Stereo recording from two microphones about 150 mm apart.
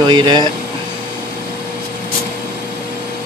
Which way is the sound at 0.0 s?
30° right (ahead or behind).